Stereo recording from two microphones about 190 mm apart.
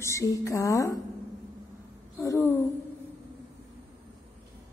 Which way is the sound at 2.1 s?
15° left (ahead or behind).